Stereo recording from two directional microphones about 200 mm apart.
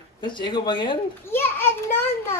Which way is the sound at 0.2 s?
25° left (ahead or behind).